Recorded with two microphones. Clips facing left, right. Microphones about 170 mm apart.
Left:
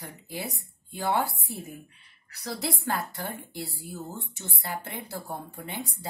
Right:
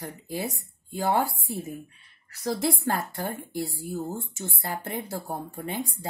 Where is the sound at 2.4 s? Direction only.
45° right (ahead or behind).